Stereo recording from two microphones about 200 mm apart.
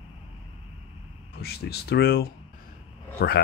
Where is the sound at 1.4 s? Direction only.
55° left (ahead or behind).